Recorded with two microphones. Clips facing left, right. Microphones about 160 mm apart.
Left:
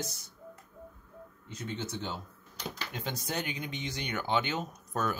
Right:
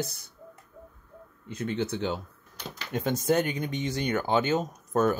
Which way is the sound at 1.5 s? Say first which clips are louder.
Right 8 dB; 60° right (ahead or behind).